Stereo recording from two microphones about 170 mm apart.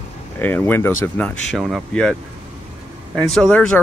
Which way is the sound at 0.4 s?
10° left (ahead or behind).